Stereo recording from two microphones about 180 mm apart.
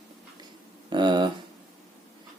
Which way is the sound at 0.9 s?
25° right (ahead or behind).